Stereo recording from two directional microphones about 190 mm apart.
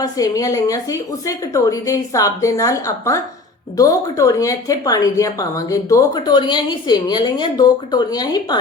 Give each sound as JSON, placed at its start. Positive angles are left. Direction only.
{"t": 0.0, "sound": "a woman's voice", "side_deg": 20}